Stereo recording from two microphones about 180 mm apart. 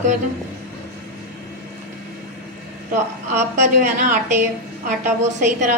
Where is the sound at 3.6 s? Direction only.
45° right (ahead or behind).